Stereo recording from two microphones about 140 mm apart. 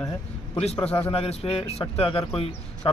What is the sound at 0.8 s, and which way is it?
Speech, 10° left (ahead or behind).